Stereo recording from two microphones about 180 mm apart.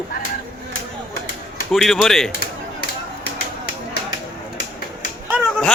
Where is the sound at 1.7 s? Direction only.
Centre (ahead or behind).